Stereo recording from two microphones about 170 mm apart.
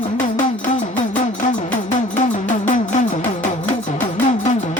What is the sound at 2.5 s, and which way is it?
Music, 45° left (ahead or behind).